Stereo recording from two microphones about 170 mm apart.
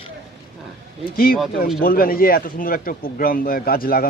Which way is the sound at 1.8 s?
55° left (ahead or behind).